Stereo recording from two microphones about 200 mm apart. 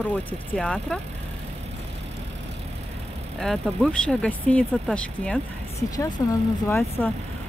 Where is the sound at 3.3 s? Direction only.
Centre (ahead or behind).